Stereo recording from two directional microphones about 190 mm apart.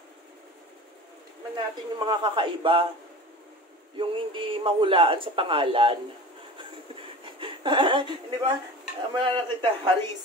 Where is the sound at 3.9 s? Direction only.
25° right (ahead or behind).